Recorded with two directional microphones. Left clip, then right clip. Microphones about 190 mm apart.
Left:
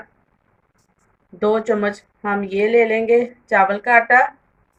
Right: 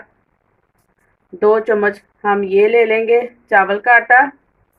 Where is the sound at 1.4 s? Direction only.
45° right (ahead or behind).